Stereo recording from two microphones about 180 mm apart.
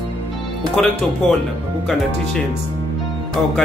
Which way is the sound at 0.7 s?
Centre (ahead or behind).